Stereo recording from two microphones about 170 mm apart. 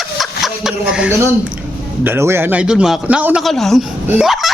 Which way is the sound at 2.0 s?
15° right (ahead or behind).